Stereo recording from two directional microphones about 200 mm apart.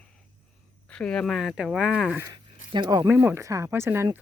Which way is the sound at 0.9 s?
5° left (ahead or behind).